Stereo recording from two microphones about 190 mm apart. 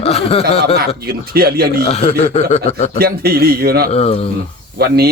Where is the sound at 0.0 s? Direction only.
30° left (ahead or behind).